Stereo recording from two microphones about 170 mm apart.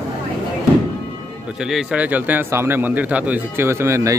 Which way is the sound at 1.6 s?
5° right (ahead or behind).